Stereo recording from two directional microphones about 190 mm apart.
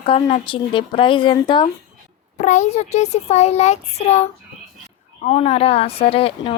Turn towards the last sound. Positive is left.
turn(degrees=30)  # may be behind; listen again after turning